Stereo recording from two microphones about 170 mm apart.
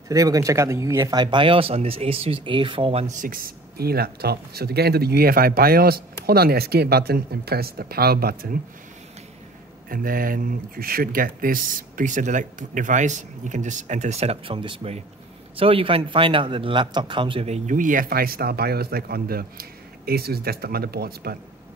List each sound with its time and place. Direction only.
0.1 s speech: 20° right (ahead or behind)
3.2 s speech: 55° right (ahead or behind)
9.8 s speech: 55° right (ahead or behind); by 17.6 s 30° right (ahead or behind)
17.6 s speech: 50° right (ahead or behind)